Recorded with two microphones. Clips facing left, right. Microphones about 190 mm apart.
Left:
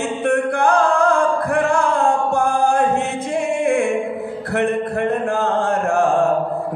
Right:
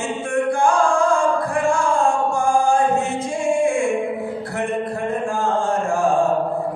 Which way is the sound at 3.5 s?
60° left (ahead or behind).